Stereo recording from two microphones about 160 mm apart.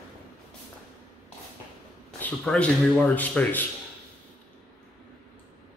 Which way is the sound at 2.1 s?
10° left (ahead or behind).